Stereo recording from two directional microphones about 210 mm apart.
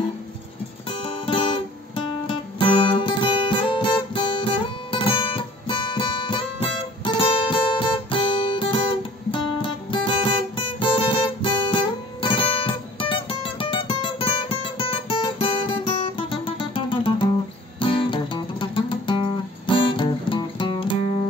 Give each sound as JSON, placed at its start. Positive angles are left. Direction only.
{"t": 0.8, "sound": "music", "side_deg": 25}